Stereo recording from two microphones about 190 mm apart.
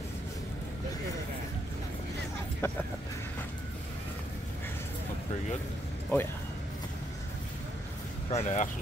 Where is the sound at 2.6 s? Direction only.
10° left (ahead or behind).